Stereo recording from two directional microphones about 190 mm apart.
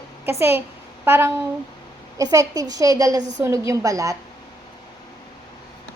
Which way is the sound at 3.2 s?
40° right (ahead or behind).